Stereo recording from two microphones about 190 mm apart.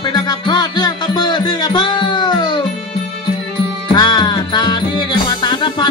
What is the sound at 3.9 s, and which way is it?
Music, 25° left (ahead or behind).